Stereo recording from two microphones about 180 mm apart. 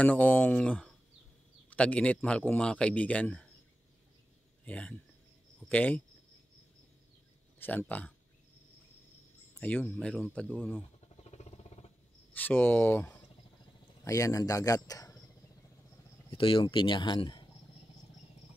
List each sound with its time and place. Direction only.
0.0 s a man's voice: 10° left (ahead or behind)
4.6 s a man's voice: 5° left (ahead or behind)
7.5 s speech: 10° left (ahead or behind)
9.6 s speech: 10° left (ahead or behind)
11.2 s a sound: 35° left (ahead or behind)
12.4 s a man's voice: 10° left (ahead or behind)
16.3 s speech: 30° left (ahead or behind)